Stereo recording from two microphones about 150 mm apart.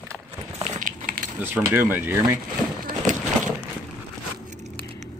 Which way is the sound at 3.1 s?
55° right (ahead or behind).